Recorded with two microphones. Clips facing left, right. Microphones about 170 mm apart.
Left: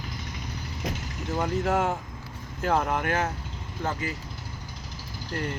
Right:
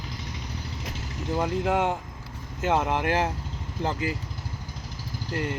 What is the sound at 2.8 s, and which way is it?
Speech, 25° right (ahead or behind).